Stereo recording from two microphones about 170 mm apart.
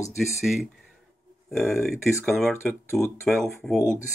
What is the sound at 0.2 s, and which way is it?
Speech, centre (ahead or behind).